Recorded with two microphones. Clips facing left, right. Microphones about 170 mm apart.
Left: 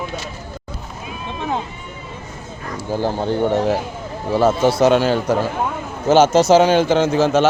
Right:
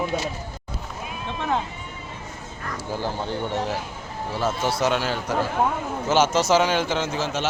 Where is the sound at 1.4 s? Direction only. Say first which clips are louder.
Left 2 dB; 15° left (ahead or behind).